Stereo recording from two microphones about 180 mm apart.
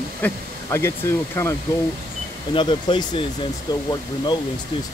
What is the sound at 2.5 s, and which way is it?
Speech, 25° left (ahead or behind).